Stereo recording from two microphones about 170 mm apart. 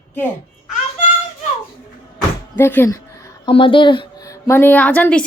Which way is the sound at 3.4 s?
30° left (ahead or behind).